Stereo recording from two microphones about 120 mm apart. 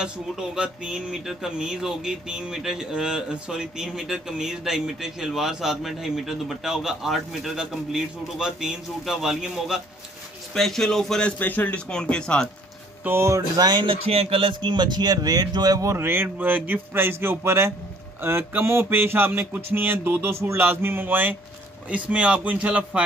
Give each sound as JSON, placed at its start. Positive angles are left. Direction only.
{"t": 0.0, "sound": "a man's voice", "side_deg": -5}
{"t": 13.0, "sound": "speech", "side_deg": -20}
{"t": 13.7, "sound": "speech", "side_deg": -45}
{"t": 18.2, "sound": "a sound", "side_deg": -20}
{"t": 20.4, "sound": "speech", "side_deg": -20}
{"t": 21.8, "sound": "a sound", "side_deg": -10}